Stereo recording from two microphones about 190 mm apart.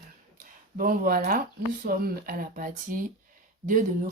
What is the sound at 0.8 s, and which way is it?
Speech, 50° right (ahead or behind).